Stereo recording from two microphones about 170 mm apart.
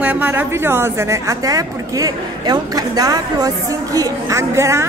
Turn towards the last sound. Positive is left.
turn(degrees=-15)  # may be behind; listen again after turning